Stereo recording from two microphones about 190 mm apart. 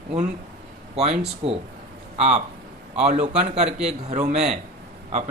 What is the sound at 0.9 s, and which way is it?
A man's voice, 35° right (ahead or behind).